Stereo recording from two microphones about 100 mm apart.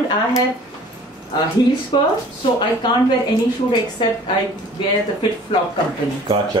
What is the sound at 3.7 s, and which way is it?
Speech, 60° left (ahead or behind).